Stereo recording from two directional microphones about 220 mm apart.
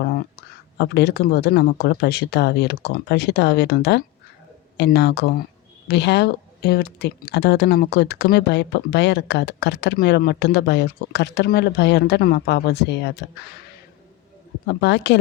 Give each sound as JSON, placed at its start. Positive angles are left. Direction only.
{"t": 0.0, "sound": "a sound", "side_deg": 45}
{"t": 0.8, "sound": "speech", "side_deg": 50}
{"t": 14.8, "sound": "speech", "side_deg": 50}